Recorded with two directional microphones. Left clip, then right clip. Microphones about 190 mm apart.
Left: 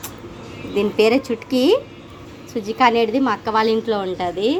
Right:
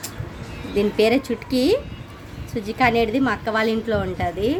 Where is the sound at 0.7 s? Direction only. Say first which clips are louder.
Left 2 dB; 10° right (ahead or behind).